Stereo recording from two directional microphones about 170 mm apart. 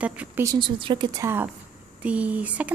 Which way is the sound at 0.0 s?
10° right (ahead or behind).